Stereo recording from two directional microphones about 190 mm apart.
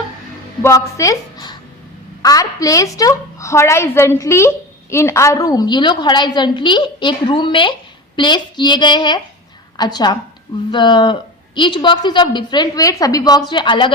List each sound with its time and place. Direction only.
0.6 s a woman's voice: 15° left (ahead or behind)